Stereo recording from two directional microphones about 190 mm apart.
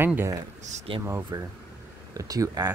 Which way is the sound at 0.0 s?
10° right (ahead or behind).